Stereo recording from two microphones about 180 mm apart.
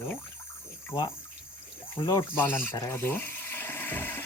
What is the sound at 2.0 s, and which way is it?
Speech, 20° left (ahead or behind).